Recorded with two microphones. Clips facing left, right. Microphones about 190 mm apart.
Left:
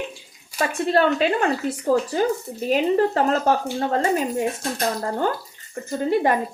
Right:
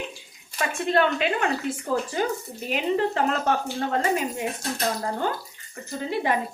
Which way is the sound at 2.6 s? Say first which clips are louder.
Left 5 dB; 40° left (ahead or behind).